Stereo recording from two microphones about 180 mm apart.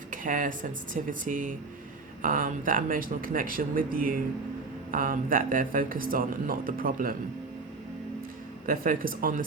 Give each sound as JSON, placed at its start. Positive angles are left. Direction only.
{"t": 0.1, "sound": "a sound", "side_deg": -50}
{"t": 1.2, "sound": "speech", "side_deg": -50}
{"t": 8.6, "sound": "speech", "side_deg": -50}